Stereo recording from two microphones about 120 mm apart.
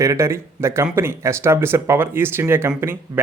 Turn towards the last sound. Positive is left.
turn(degrees=-20)  # may be behind; listen again after turning